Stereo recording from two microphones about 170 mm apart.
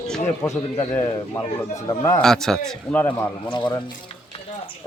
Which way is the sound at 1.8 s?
20° left (ahead or behind).